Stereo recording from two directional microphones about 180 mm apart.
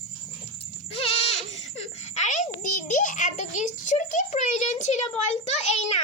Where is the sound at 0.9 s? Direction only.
35° left (ahead or behind).